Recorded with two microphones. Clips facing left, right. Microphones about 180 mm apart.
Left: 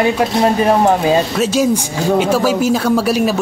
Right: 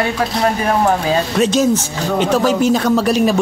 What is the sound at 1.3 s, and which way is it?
Speech, 5° left (ahead or behind).